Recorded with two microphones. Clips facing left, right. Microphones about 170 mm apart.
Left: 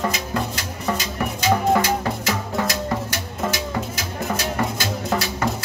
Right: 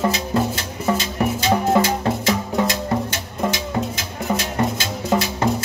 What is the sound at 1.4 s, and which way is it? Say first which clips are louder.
Music: even; 20° right (ahead or behind).